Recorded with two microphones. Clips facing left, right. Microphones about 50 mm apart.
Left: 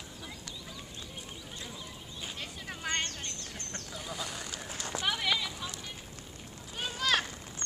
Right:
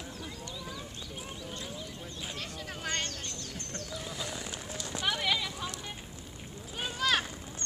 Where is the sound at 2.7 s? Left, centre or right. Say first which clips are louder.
Left 1 dB; centre.